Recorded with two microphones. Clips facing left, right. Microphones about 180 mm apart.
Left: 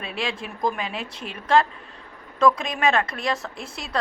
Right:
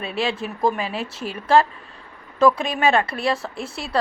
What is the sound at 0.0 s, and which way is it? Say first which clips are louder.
Speech: right 5 dB; 5° right (ahead or behind).